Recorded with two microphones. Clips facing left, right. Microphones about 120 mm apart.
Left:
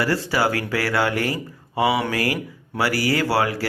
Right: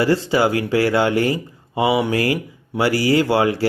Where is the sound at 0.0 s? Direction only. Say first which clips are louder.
Right 4 dB; 25° right (ahead or behind).